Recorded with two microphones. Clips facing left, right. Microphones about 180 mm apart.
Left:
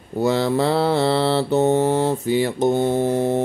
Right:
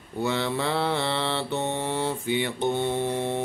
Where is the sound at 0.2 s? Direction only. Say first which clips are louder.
Left 8 dB; 40° left (ahead or behind).